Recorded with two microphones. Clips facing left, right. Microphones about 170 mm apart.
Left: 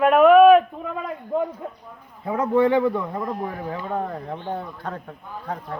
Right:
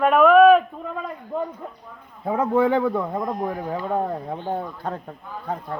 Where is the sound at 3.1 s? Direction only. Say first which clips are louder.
Right 2 dB; 15° right (ahead or behind).